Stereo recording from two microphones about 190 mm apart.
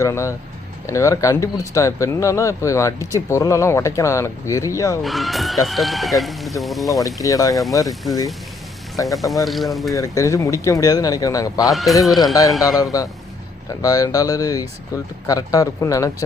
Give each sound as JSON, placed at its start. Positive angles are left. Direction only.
{"t": 0.0, "sound": "speech", "side_deg": 15}
{"t": 5.0, "sound": "speech", "side_deg": 0}
{"t": 7.0, "sound": "speech", "side_deg": 20}
{"t": 9.1, "sound": "speech", "side_deg": 0}
{"t": 9.9, "sound": "a man's voice", "side_deg": 15}
{"t": 11.7, "sound": "speech", "side_deg": 0}
{"t": 12.6, "sound": "a man's voice", "side_deg": 20}